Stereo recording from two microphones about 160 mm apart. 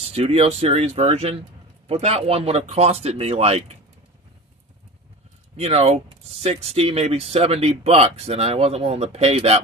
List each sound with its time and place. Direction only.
0.0 s speech: 40° right (ahead or behind)
5.6 s speech: 40° right (ahead or behind)